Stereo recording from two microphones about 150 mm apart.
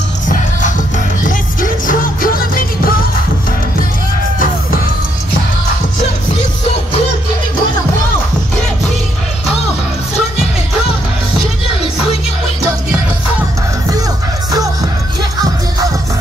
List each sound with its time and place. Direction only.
0.3 s music: 60° left (ahead or behind)
14.5 s music: 25° right (ahead or behind)